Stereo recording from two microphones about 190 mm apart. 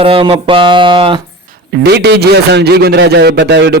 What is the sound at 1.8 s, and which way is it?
Speech, 60° right (ahead or behind).